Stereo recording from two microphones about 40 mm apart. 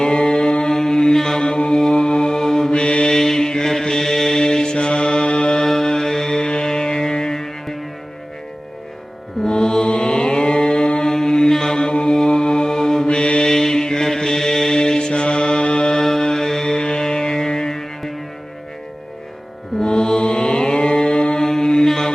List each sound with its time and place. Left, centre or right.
0.0 s mantra: centre
1.5 s music: left
1.8 s mantra: left
2.8 s mantra: left
3.2 s mantra: centre
5.6 s music: centre
9.4 s mantra: centre
13.1 s mantra: left
13.5 s mantra: centre
19.8 s mantra: centre